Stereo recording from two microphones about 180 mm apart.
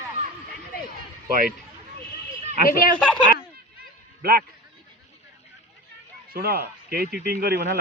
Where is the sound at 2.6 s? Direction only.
55° left (ahead or behind).